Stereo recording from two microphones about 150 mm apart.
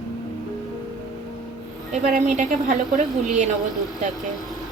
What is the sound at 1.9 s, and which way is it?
Speech, 55° right (ahead or behind).